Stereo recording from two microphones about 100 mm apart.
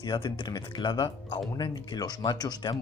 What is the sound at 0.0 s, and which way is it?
Speech, 45° left (ahead or behind).